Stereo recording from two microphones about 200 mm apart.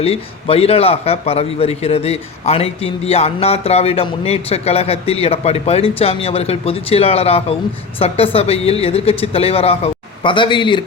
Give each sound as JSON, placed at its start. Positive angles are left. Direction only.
{"t": 0.0, "sound": "a man's voice", "side_deg": 30}